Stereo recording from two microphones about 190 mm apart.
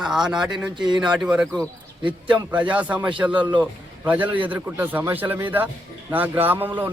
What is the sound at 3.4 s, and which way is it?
Speech, 25° right (ahead or behind).